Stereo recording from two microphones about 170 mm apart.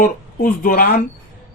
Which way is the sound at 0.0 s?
55° left (ahead or behind).